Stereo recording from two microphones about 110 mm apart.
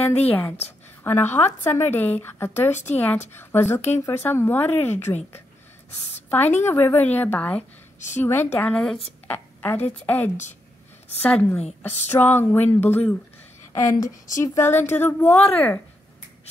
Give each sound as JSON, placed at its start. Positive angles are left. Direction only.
{"t": 0.3, "sound": "speech", "side_deg": 15}
{"t": 6.6, "sound": "a woman's voice", "side_deg": 20}
{"t": 13.7, "sound": "speech", "side_deg": 30}